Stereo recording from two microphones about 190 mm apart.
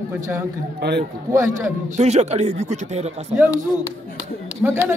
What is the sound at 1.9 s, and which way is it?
Speech, 35° right (ahead or behind).